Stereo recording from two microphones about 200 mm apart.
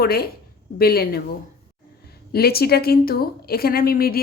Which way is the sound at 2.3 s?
50° left (ahead or behind).